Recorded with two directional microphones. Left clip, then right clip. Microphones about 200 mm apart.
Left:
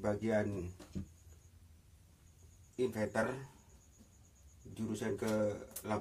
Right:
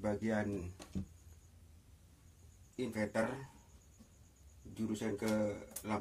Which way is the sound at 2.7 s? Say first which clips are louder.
Left 2 dB; 10° left (ahead or behind).